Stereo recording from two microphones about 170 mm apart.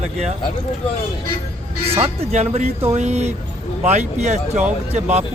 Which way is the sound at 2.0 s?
40° right (ahead or behind).